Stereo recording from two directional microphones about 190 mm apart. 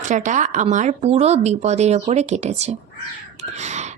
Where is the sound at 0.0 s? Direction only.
40° right (ahead or behind).